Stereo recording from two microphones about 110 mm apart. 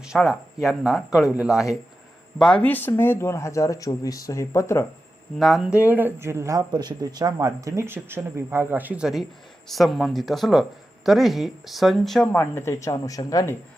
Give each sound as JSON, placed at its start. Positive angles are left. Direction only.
{"t": 0.0, "sound": "speech", "side_deg": -5}
{"t": 2.4, "sound": "speech", "side_deg": 10}
{"t": 5.4, "sound": "speech", "side_deg": 0}
{"t": 12.3, "sound": "speech", "side_deg": 20}